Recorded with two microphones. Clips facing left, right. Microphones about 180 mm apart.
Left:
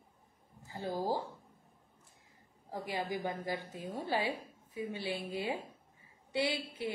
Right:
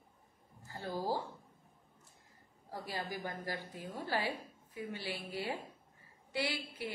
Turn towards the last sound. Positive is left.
turn(degrees=20)  # may be behind; listen again after turning